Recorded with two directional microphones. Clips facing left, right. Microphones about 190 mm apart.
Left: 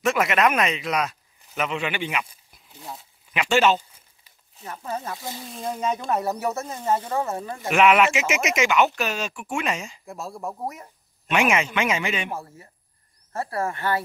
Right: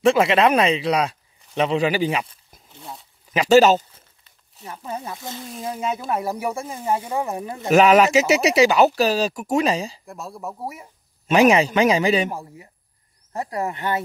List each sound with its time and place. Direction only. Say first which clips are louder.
0.0 s speech: right 5 dB; 30° right (ahead or behind)
2.8 s speech: even; centre (ahead or behind)
3.3 s speech: right 6 dB; 40° right (ahead or behind)
4.6 s speech: even; 10° right (ahead or behind)
7.7 s speech: right 5 dB; 35° right (ahead or behind)
10.0 s speech: even; centre (ahead or behind)
11.2 s speech: right 7 dB; 35° right (ahead or behind)
12.3 s speech: right 2 dB; 15° right (ahead or behind)